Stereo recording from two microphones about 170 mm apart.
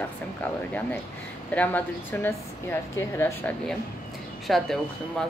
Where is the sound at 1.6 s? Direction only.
10° left (ahead or behind).